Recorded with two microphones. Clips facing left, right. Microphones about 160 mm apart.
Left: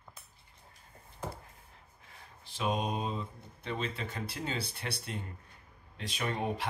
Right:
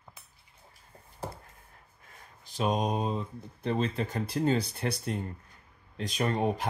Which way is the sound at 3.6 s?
40° right (ahead or behind).